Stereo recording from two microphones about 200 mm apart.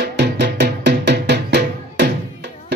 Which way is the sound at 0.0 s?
55° right (ahead or behind).